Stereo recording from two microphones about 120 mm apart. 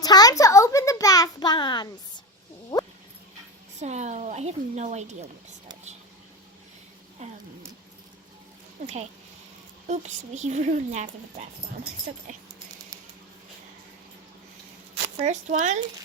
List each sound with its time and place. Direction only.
0.0 s a sound: 30° left (ahead or behind)
3.8 s speech: 70° right (ahead or behind)
9.8 s speech: 75° right (ahead or behind)
15.2 s speech: 90° right